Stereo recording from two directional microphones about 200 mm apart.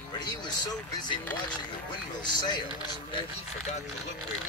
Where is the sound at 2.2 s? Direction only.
20° left (ahead or behind).